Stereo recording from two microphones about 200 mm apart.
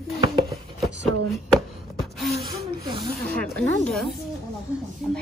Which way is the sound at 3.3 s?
5° left (ahead or behind).